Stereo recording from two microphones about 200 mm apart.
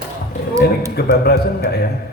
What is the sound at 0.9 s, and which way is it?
Speech, 55° left (ahead or behind).